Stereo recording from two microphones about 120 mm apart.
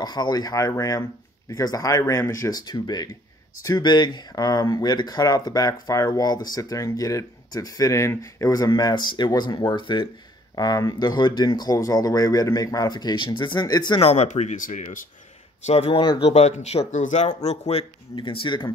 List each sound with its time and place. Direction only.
0.0 s speech: 35° left (ahead or behind)
10.5 s speech: 30° left (ahead or behind)
14.0 s speech: 60° left (ahead or behind); by 15.0 s 85° left
15.6 s speech: 65° left (ahead or behind)
16.0 s speech: 40° left (ahead or behind)
16.3 s speech: 65° left (ahead or behind)
18.1 s speech: 45° left (ahead or behind)